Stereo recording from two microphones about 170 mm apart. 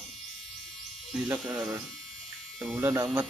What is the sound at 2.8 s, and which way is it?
Speech, 20° right (ahead or behind).